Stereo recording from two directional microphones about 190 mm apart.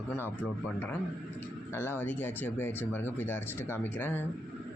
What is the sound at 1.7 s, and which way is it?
Speech, 10° left (ahead or behind).